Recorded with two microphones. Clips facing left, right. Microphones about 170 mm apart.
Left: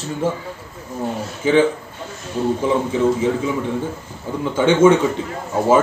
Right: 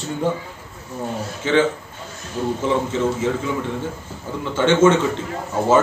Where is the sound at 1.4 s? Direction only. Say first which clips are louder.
Left 3 dB; 10° left (ahead or behind).